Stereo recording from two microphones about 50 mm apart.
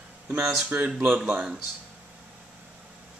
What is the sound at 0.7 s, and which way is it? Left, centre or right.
Speech, right.